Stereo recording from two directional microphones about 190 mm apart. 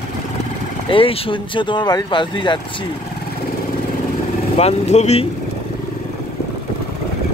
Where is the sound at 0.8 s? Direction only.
30° left (ahead or behind).